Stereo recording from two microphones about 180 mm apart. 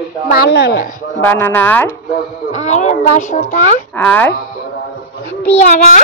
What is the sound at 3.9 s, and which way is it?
Speech, 10° left (ahead or behind).